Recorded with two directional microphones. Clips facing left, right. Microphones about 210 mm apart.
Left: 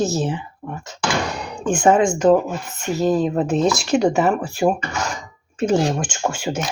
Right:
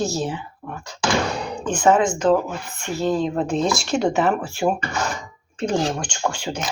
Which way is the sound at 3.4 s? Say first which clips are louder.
Left 3 dB; 5° left (ahead or behind).